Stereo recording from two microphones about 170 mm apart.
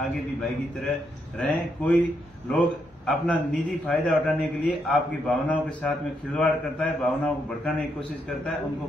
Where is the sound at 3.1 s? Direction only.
5° left (ahead or behind).